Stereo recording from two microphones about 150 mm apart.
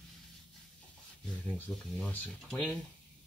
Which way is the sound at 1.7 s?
5° left (ahead or behind).